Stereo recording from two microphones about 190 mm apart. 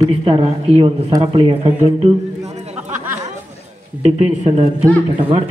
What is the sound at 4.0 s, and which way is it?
Speech, 30° right (ahead or behind).